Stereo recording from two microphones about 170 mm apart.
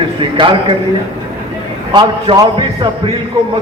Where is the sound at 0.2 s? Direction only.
30° right (ahead or behind).